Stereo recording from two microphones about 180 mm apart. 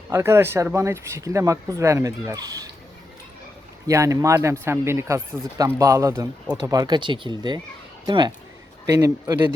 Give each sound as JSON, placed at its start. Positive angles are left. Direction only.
{"t": 0.1, "sound": "speech", "side_deg": -15}
{"t": 3.8, "sound": "speech", "side_deg": -15}